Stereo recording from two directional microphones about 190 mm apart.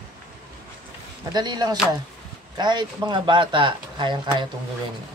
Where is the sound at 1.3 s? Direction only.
20° right (ahead or behind).